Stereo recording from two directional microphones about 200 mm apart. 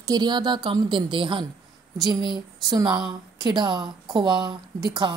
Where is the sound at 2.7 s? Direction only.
20° right (ahead or behind).